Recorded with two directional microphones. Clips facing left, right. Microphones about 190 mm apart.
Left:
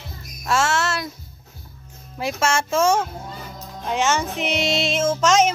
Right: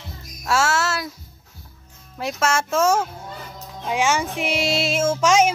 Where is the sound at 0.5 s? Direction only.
5° right (ahead or behind).